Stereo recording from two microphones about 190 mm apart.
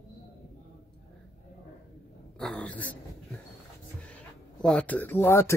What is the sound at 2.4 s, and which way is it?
Speech, 5° left (ahead or behind).